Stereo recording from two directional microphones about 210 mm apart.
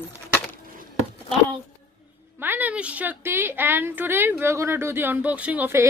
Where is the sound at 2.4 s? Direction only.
10° right (ahead or behind).